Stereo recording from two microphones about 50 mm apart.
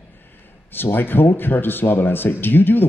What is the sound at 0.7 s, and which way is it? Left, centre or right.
Speech, left.